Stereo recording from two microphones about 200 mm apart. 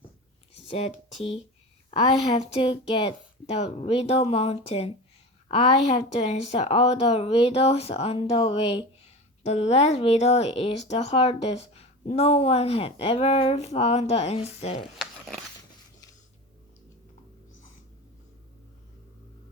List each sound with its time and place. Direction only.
0.7 s speech: 30° left (ahead or behind)
2.0 s a woman's voice: 20° left (ahead or behind)
14.9 s a sound: centre (ahead or behind)